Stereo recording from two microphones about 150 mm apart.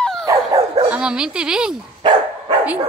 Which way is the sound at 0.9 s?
5° right (ahead or behind).